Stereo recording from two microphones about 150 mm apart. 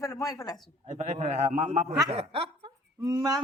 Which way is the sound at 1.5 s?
50° right (ahead or behind).